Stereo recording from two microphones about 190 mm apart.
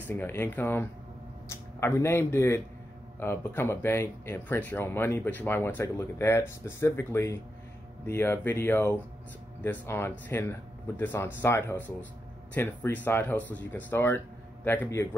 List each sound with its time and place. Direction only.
0.0 s speech: 10° left (ahead or behind)